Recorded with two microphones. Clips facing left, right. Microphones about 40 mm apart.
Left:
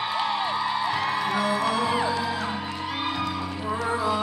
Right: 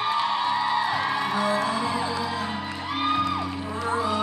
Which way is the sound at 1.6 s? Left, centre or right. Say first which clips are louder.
Left 2 dB; left.